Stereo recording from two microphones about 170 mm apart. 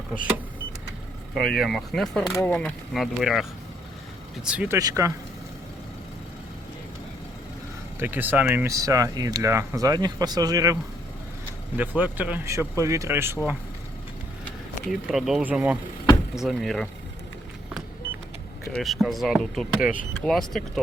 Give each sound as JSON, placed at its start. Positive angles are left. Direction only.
{"t": 1.3, "sound": "speech", "side_deg": 0}
{"t": 4.4, "sound": "speech", "side_deg": -5}
{"t": 4.8, "sound": "speech", "side_deg": -20}
{"t": 7.9, "sound": "speech", "side_deg": -10}
{"t": 11.8, "sound": "speech", "side_deg": -10}
{"t": 14.4, "sound": "speech", "side_deg": 0}
{"t": 18.7, "sound": "speech", "side_deg": 0}